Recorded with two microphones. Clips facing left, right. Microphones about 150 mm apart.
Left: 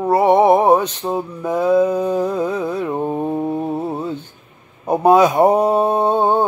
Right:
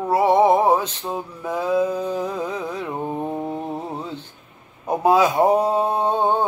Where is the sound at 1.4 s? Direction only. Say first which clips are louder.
Left 6 dB; 15° left (ahead or behind).